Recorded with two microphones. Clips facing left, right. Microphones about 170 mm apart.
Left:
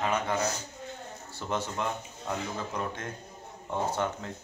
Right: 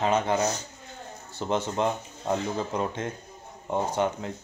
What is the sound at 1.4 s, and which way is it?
A man's voice, 20° right (ahead or behind).